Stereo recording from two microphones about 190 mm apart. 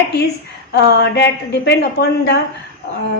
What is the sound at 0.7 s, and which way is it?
A man's voice, 60° left (ahead or behind).